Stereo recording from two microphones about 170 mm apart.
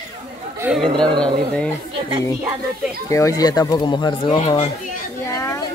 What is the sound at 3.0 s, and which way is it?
Speech, 20° left (ahead or behind).